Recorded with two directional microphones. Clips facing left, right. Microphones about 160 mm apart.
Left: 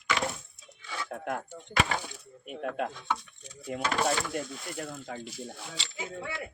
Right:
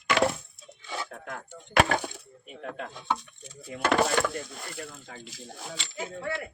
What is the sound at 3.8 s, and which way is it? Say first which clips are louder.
Speech: right 5 dB; 65° right (ahead or behind).